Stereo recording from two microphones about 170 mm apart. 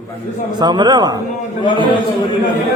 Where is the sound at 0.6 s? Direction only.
25° right (ahead or behind).